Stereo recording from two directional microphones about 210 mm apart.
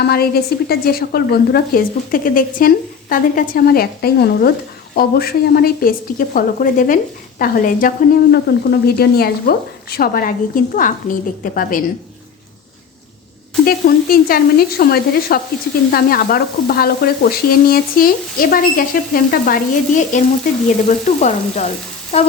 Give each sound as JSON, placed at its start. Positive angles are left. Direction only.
{"t": 0.0, "sound": "a woman's voice", "side_deg": 50}
{"t": 13.7, "sound": "a woman's voice", "side_deg": 45}
{"t": 22.1, "sound": "a sound", "side_deg": 30}